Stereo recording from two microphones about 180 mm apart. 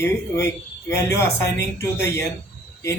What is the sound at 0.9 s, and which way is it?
Speech, 15° left (ahead or behind).